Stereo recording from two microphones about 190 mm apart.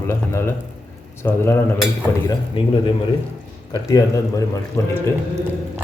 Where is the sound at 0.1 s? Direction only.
15° left (ahead or behind).